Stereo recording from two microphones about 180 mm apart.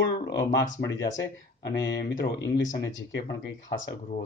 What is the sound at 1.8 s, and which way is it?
Speech, 75° left (ahead or behind).